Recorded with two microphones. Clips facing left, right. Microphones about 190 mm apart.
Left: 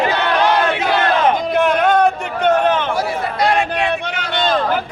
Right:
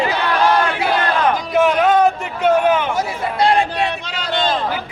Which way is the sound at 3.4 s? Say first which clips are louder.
Right 2 dB; 30° right (ahead or behind).